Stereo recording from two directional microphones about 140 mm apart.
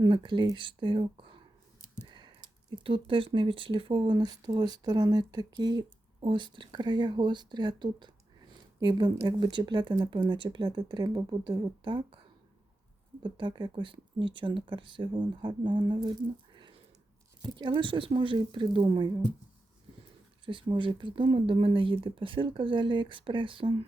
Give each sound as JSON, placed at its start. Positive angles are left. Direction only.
{"t": 0.0, "sound": "speech", "side_deg": -35}
{"t": 13.2, "sound": "speech", "side_deg": -30}
{"t": 17.4, "sound": "speech", "side_deg": -30}
{"t": 20.4, "sound": "speech", "side_deg": -35}